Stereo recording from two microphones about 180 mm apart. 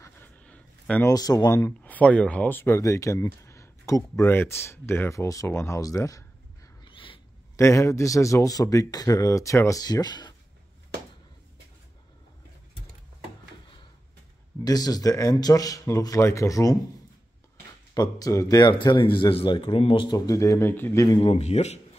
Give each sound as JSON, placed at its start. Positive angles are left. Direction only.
{"t": 0.0, "sound": "a sound", "side_deg": 10}
{"t": 1.1, "sound": "speech", "side_deg": 20}
{"t": 6.8, "sound": "a sound", "side_deg": 30}
{"t": 7.5, "sound": "speech", "side_deg": 15}
{"t": 14.6, "sound": "speech", "side_deg": 20}
{"t": 17.9, "sound": "speech", "side_deg": 20}
{"t": 21.2, "sound": "speech", "side_deg": 35}